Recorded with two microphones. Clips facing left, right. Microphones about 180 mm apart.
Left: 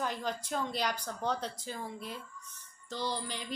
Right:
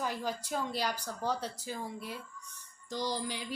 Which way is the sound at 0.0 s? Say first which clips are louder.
Even; 10° right (ahead or behind).